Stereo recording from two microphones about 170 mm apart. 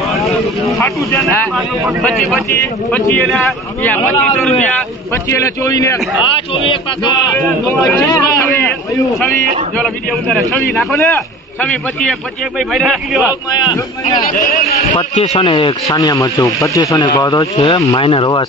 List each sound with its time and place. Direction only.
0.7 s speech: 15° left (ahead or behind)
2.0 s a man's voice: centre (ahead or behind)
3.0 s speech: 15° left (ahead or behind)
6.5 s speech: 30° left (ahead or behind)
7.3 s speech: 10° left (ahead or behind)
9.4 s speech: 40° right (ahead or behind)
9.8 s a man's voice: 5° left (ahead or behind)
11.1 s a man's voice: 10° left (ahead or behind)
13.6 s speech: 25° left (ahead or behind)
15.0 s speech: 35° left (ahead or behind)